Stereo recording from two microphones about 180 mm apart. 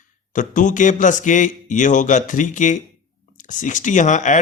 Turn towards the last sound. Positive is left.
turn(degrees=45)  # may be behind; listen again after turning